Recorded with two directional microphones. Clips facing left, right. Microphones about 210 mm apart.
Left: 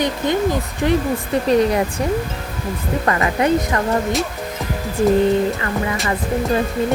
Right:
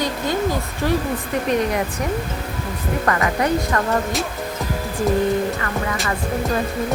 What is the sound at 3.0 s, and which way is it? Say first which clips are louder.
Speech: left 2 dB; 25° left (ahead or behind).